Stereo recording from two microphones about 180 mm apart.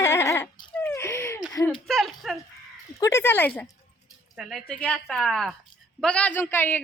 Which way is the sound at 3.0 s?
15° left (ahead or behind).